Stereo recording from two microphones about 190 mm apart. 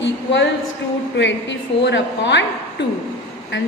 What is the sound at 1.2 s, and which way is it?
A woman's voice, 70° left (ahead or behind).